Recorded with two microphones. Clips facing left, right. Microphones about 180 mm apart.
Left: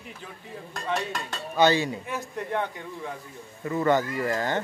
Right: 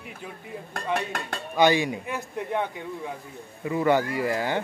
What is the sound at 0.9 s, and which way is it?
Speech, 55° right (ahead or behind).